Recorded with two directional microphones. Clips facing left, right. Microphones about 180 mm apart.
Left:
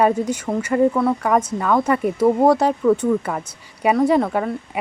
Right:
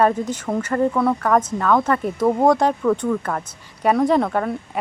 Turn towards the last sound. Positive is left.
turn(degrees=5)  # may be behind; listen again after turning